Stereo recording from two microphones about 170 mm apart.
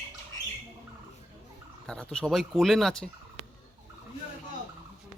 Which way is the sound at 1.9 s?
5° left (ahead or behind).